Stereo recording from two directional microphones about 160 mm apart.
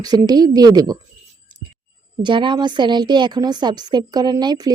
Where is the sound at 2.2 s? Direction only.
30° right (ahead or behind).